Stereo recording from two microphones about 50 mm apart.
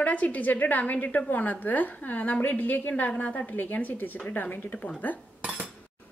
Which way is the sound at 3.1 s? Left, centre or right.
Left.